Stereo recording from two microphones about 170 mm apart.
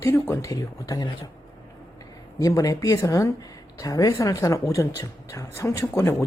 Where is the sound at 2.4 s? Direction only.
20° left (ahead or behind).